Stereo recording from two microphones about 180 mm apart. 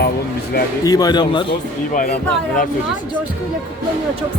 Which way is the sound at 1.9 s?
50° left (ahead or behind).